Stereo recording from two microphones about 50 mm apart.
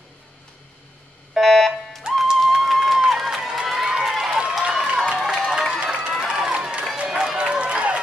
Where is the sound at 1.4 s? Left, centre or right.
Centre.